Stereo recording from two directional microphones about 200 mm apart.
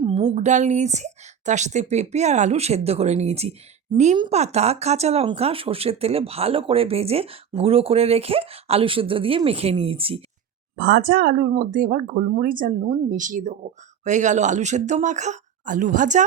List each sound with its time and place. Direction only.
0.0 s speech: 25° right (ahead or behind)
10.8 s speech: 55° right (ahead or behind); by 16.2 s 40° right (ahead or behind)